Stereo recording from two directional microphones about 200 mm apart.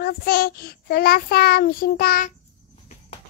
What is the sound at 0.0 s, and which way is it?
Child singing, 50° left (ahead or behind).